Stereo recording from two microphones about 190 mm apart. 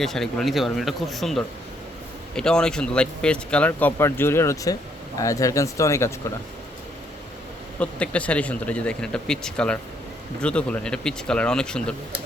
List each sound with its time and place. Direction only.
0.0 s speech: centre (ahead or behind)
7.8 s speech: 5° left (ahead or behind)